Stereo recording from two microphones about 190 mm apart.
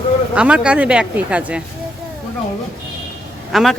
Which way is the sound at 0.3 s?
5° right (ahead or behind).